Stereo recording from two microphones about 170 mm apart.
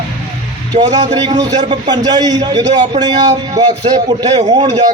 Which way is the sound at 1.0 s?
25° right (ahead or behind).